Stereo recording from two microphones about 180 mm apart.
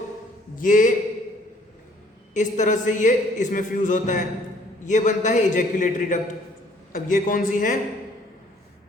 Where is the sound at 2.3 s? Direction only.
45° left (ahead or behind).